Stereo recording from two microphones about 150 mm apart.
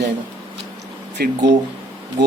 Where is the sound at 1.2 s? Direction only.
90° right.